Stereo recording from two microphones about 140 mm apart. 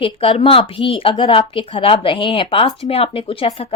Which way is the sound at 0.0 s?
40° left (ahead or behind).